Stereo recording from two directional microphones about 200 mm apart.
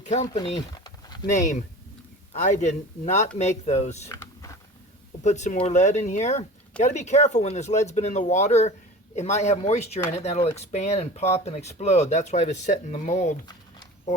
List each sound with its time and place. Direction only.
0.3 s a sound: 20° left (ahead or behind)
1.4 s speech: 35° left (ahead or behind)
5.2 s speech: 35° left (ahead or behind)